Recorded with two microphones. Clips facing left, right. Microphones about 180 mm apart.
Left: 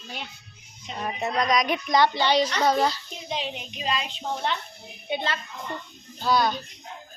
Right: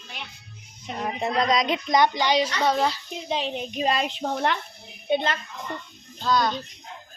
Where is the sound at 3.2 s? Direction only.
40° right (ahead or behind).